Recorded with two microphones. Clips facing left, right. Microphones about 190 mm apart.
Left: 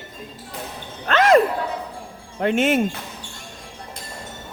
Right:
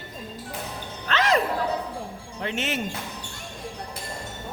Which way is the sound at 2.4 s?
50° left (ahead or behind).